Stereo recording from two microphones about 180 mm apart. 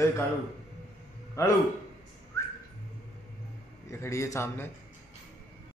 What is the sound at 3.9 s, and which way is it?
Speech, 15° left (ahead or behind).